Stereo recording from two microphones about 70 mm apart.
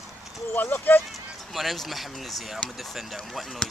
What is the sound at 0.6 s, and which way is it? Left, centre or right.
Speech, left.